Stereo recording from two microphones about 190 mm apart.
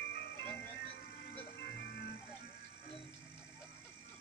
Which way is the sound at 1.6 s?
60° left (ahead or behind).